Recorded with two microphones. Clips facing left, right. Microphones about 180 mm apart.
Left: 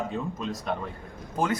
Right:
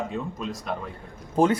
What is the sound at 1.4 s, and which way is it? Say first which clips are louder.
Speech: right 7 dB; 30° right (ahead or behind).